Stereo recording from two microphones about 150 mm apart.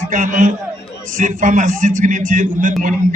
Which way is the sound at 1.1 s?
55° right (ahead or behind).